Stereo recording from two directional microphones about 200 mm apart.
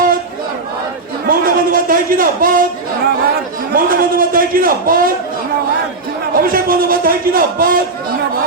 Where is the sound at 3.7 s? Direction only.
45° right (ahead or behind).